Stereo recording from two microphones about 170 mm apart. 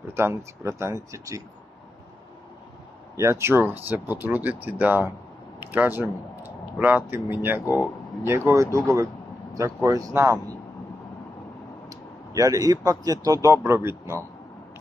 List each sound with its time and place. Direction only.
0.1 s speech: 15° right (ahead or behind)
3.2 s speech: 15° right (ahead or behind)
12.4 s speech: 20° right (ahead or behind)